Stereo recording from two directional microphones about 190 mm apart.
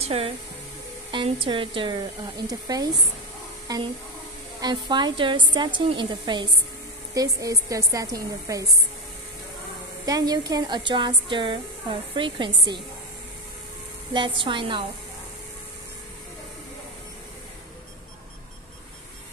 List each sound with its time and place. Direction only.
0.0 s a woman's voice: 30° right (ahead or behind)
10.0 s a woman's voice: 20° right (ahead or behind)
14.1 s a woman's voice: 25° right (ahead or behind)